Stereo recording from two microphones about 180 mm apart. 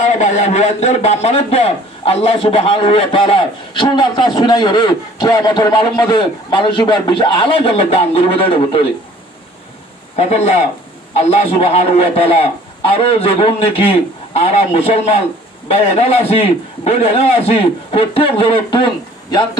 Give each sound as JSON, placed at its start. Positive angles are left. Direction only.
{"t": 0.0, "sound": "a man's voice", "side_deg": 40}
{"t": 10.1, "sound": "a man's voice", "side_deg": 35}